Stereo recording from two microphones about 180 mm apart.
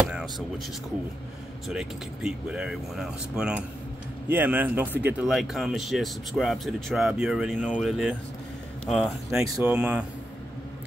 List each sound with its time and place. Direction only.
1.7 s speech: 5° right (ahead or behind)
9.3 s speech: 10° right (ahead or behind)